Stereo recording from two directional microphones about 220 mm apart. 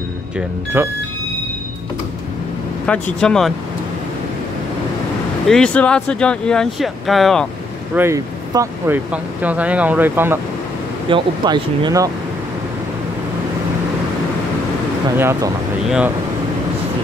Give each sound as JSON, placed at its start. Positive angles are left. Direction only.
{"t": 0.8, "sound": "speech", "side_deg": -10}
{"t": 2.9, "sound": "speech", "side_deg": 5}
{"t": 5.5, "sound": "speech", "side_deg": 5}
{"t": 7.9, "sound": "speech", "side_deg": -10}
{"t": 11.1, "sound": "speech", "side_deg": -20}
{"t": 15.1, "sound": "speech", "side_deg": -10}